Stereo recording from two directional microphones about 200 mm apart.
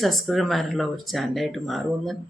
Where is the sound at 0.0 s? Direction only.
Centre (ahead or behind).